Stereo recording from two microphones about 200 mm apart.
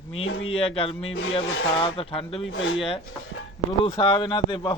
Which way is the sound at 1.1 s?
75° left (ahead or behind).